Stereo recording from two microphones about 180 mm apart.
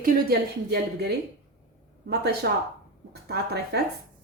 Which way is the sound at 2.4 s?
75° right (ahead or behind).